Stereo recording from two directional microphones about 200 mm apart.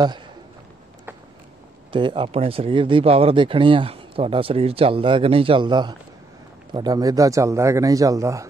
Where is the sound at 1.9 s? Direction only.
25° right (ahead or behind).